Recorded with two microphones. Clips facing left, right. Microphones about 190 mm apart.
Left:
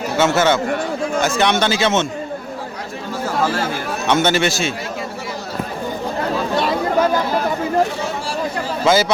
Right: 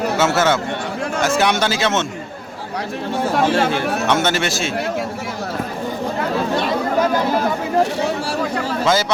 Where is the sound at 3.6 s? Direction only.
75° right (ahead or behind).